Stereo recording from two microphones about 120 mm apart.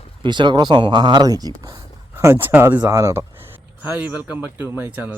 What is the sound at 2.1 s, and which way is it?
Speech, 20° right (ahead or behind).